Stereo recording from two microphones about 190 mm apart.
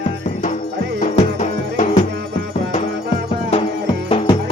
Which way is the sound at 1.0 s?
35° left (ahead or behind).